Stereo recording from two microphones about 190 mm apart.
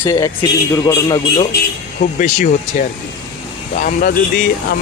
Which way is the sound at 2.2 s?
40° left (ahead or behind).